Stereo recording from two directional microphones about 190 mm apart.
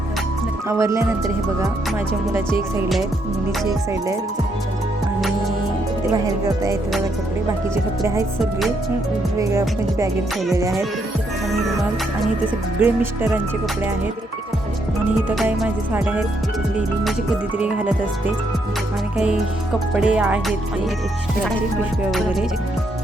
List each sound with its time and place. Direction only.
0.7 s music: 15° right (ahead or behind)
6.2 s music: 15° right (ahead or behind)
9.4 s music: 15° right (ahead or behind)
12.8 s music: 10° right (ahead or behind)
15.4 s music: 5° right (ahead or behind)
19.9 s music: 5° right (ahead or behind)